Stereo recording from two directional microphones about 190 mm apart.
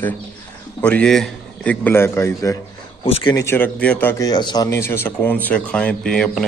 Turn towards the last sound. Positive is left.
turn(degrees=5)  # may be behind; listen again after turning